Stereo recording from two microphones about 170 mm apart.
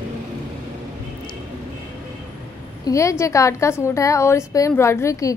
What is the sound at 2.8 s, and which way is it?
A woman's voice, 20° left (ahead or behind).